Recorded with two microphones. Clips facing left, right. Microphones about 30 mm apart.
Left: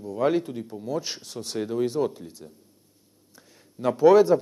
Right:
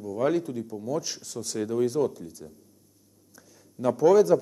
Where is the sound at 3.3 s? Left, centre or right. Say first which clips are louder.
Even; left.